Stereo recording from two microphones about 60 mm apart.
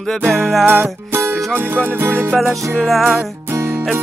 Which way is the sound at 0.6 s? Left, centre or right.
Right.